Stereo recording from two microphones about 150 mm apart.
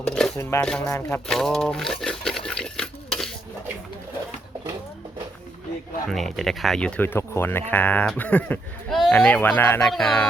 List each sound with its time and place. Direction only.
0.0 s a sound: 5° left (ahead or behind)
0.6 s speech: 5° left (ahead or behind)
0.9 s speech: 15° left (ahead or behind)
1.3 s sewing machine: 5° left (ahead or behind)
6.1 s speech: centre (ahead or behind)
9.9 s speech: 5° left (ahead or behind)